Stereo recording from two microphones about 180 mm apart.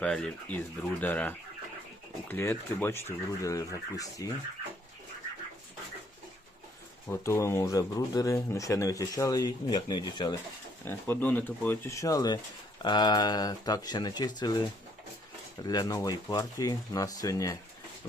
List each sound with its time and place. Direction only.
0.0 s speech: 5° left (ahead or behind)
7.3 s speech: 15° left (ahead or behind)
10.8 s speech: 10° left (ahead or behind)
15.6 s speech: 20° left (ahead or behind)